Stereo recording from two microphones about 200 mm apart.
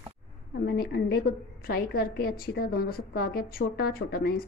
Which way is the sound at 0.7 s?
50° left (ahead or behind).